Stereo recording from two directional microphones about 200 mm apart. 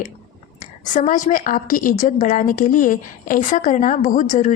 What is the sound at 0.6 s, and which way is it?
A woman's voice, 40° left (ahead or behind).